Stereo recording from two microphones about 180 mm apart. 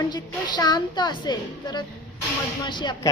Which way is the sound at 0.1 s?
25° left (ahead or behind).